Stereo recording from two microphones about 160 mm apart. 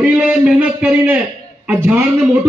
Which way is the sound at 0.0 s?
5° right (ahead or behind).